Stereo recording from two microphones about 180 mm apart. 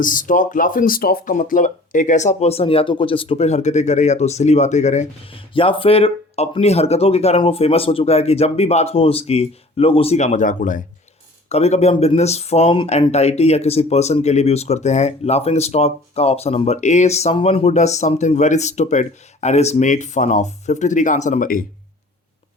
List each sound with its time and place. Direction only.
0.0 s speech: 50° left (ahead or behind)